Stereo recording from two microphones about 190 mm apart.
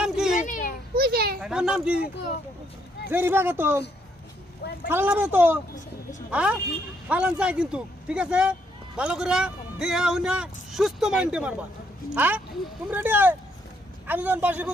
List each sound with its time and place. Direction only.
0.0 s children playing: 5° right (ahead or behind)
0.4 s children playing: 45° left (ahead or behind)
0.9 s children playing: 55° right (ahead or behind)
1.4 s a child's voice: 5° right (ahead or behind)
3.1 s a woman's voice: 10° right (ahead or behind)
4.9 s a woman's voice: 10° right (ahead or behind)